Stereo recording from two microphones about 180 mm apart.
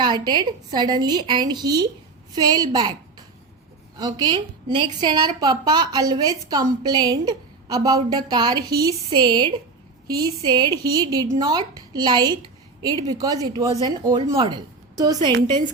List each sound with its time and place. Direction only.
0.0 s a woman's voice: 25° right (ahead or behind)